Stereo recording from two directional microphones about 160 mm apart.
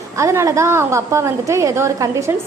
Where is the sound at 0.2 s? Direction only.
20° right (ahead or behind).